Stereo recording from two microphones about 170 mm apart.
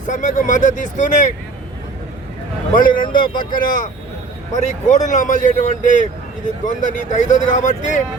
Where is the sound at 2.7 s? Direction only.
55° left (ahead or behind).